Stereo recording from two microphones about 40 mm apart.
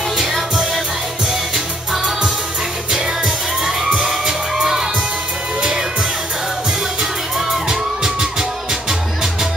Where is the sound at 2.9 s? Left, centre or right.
Centre.